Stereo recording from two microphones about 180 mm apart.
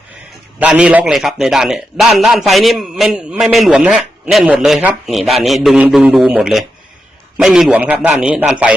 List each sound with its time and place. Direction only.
0.6 s a man's voice: 5° right (ahead or behind)